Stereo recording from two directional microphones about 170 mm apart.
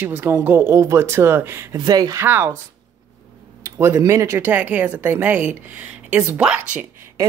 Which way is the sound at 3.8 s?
15° right (ahead or behind).